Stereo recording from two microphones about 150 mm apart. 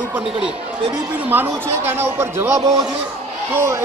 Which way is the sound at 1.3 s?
15° right (ahead or behind).